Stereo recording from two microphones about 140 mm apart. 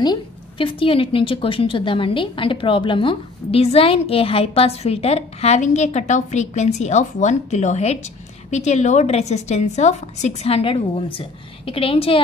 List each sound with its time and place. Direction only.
0.0 s a woman's voice: 35° left (ahead or behind)